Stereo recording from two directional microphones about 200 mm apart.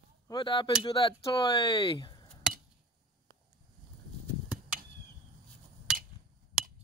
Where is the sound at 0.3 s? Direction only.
25° left (ahead or behind).